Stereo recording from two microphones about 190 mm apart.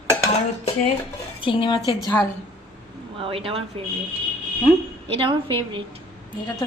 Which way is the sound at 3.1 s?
30° right (ahead or behind).